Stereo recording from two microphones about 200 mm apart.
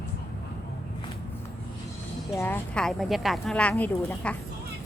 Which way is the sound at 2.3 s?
10° left (ahead or behind).